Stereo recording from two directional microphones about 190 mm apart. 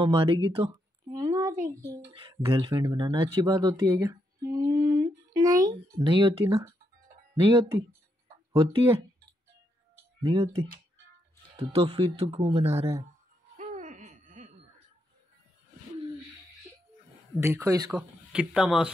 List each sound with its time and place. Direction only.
0.0 s speech: 25° right (ahead or behind)
1.1 s a sound: 20° right (ahead or behind)
2.6 s speech: 20° right (ahead or behind)
5.8 s speech: 30° right (ahead or behind)
10.2 s speech: 30° right (ahead or behind)
13.6 s a sound: 40° right (ahead or behind)
17.4 s speech: 15° right (ahead or behind)
17.9 s speech: 5° right (ahead or behind)